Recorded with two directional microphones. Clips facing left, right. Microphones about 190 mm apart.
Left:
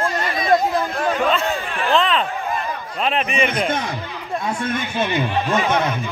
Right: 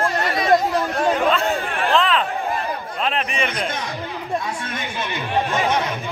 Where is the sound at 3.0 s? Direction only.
5° left (ahead or behind).